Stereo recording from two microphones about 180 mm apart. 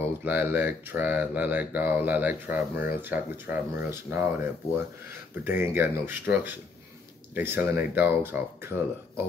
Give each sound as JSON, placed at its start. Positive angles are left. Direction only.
{"t": 0.2, "sound": "speech", "side_deg": -10}